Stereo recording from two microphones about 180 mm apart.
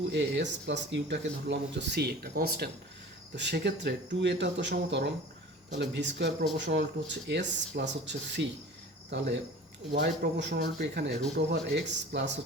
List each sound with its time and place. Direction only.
0.1 s speech: 80° right; by 2.6 s 60° right (ahead or behind)
3.3 s speech: 75° right (ahead or behind)
11.7 s speech: 75° right (ahead or behind)